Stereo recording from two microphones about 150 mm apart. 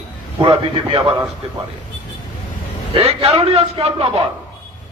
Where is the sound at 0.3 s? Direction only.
35° right (ahead or behind).